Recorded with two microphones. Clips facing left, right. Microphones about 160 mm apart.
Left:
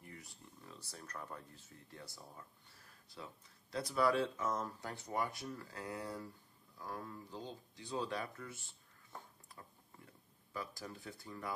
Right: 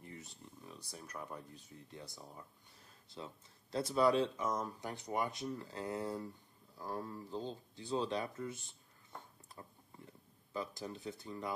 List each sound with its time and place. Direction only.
0.0 s speech: 25° right (ahead or behind)
9.5 s a sound: 25° right (ahead or behind)
10.5 s speech: 25° right (ahead or behind)